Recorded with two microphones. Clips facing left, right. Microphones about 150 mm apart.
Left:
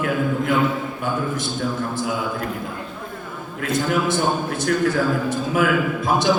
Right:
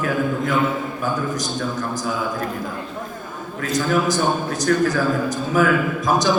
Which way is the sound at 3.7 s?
25° left (ahead or behind).